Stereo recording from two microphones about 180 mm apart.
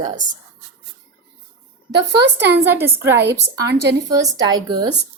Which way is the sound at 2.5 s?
10° right (ahead or behind).